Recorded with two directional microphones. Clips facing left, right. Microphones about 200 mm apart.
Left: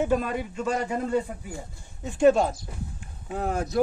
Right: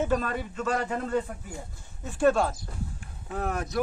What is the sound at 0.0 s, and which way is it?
A man's voice, 10° left (ahead or behind).